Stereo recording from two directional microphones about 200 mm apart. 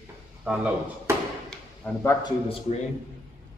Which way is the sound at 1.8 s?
15° left (ahead or behind).